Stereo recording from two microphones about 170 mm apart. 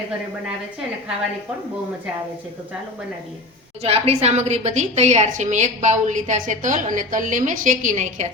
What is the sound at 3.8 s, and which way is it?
A woman's voice, 35° right (ahead or behind).